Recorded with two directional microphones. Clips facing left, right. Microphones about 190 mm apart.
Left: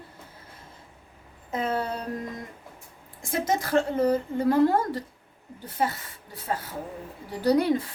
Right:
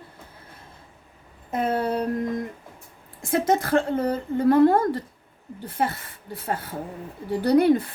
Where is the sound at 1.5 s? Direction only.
55° right (ahead or behind).